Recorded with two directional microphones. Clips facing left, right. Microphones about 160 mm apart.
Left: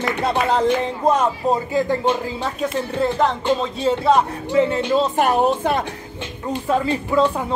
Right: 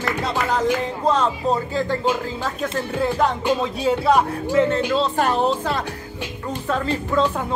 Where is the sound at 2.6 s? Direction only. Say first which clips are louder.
Left 2 dB; 5° right (ahead or behind).